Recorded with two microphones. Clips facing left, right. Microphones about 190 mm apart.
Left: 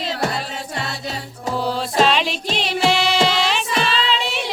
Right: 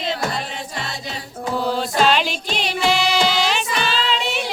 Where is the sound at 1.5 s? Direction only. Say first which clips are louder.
Even; centre (ahead or behind).